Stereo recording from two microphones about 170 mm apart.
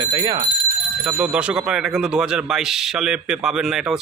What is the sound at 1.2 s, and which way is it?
Speech, 5° right (ahead or behind).